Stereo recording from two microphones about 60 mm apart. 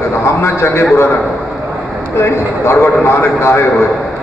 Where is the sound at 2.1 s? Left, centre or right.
Left.